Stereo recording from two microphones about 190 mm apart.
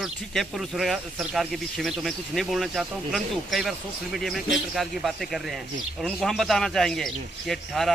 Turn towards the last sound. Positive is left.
turn(degrees=0)  # may be behind; listen again after turning